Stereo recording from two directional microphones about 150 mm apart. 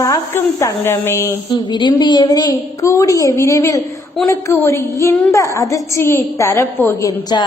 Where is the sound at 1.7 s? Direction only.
30° left (ahead or behind).